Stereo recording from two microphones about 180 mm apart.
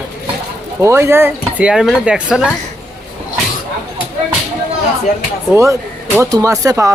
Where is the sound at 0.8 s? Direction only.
15° right (ahead or behind).